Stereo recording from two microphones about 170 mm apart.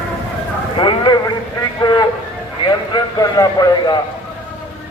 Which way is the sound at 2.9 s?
20° left (ahead or behind).